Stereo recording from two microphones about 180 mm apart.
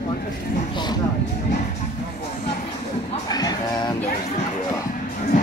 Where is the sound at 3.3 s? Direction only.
20° left (ahead or behind).